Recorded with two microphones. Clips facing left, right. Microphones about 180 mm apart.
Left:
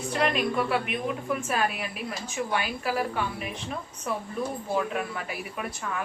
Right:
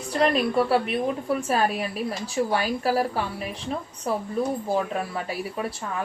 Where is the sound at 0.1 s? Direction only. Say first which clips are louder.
Right 5 dB; 35° right (ahead or behind).